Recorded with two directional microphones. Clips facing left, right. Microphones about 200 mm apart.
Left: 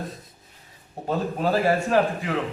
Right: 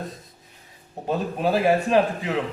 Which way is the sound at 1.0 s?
15° right (ahead or behind).